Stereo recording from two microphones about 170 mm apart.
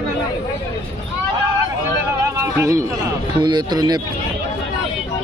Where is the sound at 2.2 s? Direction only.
20° right (ahead or behind).